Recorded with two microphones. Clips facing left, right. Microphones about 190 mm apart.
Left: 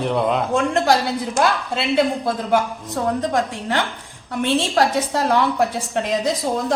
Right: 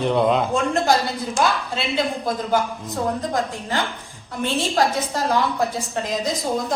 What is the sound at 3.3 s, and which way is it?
Speech, 70° left (ahead or behind).